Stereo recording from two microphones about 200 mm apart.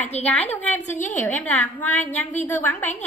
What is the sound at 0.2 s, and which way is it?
Speech, 35° left (ahead or behind).